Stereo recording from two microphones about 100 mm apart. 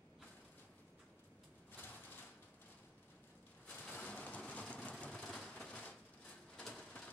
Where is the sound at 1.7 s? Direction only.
15° left (ahead or behind).